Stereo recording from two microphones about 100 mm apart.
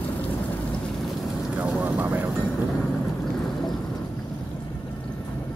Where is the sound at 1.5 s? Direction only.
15° right (ahead or behind).